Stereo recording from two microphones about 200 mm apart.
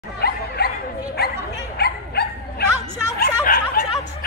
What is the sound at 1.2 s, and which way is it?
Bow-wow, 50° left (ahead or behind).